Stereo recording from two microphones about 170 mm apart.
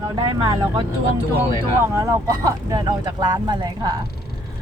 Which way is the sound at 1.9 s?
20° right (ahead or behind).